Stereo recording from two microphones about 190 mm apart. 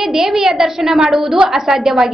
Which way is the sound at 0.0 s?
Centre (ahead or behind).